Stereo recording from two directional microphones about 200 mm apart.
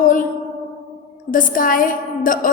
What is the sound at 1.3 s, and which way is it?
A woman's voice, 40° left (ahead or behind).